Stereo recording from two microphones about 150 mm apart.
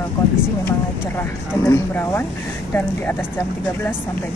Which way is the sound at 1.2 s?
15° left (ahead or behind).